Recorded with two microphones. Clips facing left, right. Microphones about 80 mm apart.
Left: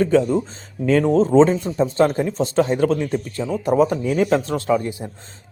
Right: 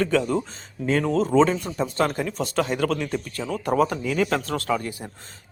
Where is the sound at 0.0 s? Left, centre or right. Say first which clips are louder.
Left 5 dB; left.